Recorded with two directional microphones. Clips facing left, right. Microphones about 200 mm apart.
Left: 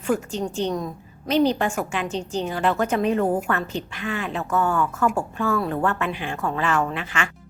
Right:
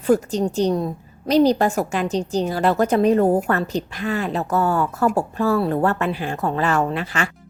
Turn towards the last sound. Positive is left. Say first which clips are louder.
# right 3 dB
turn(degrees=-40)  # may be behind; listen again after turning